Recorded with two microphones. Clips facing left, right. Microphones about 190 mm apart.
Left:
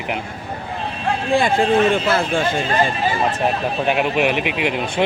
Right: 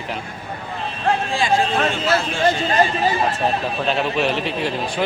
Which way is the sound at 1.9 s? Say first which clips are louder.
Left 3 dB; 55° left (ahead or behind).